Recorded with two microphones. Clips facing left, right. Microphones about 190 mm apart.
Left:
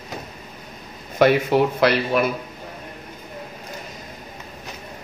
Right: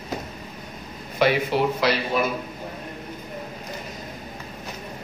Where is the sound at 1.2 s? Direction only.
50° left (ahead or behind).